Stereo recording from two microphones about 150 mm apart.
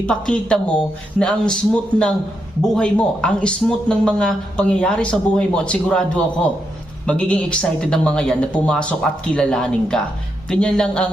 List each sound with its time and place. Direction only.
0.0 s a man's voice: 5° left (ahead or behind)